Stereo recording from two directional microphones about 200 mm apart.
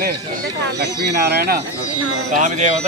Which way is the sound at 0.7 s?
55° right (ahead or behind).